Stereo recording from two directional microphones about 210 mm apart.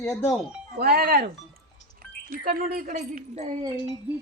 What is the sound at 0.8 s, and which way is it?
Speech, 50° right (ahead or behind).